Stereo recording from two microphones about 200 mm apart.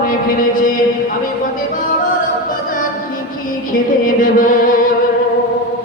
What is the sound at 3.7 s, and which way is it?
Music, 45° left (ahead or behind).